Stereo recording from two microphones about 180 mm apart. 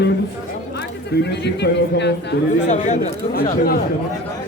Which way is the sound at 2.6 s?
40° left (ahead or behind).